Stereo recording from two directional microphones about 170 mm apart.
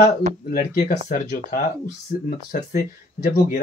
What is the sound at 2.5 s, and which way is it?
Speech, 50° left (ahead or behind).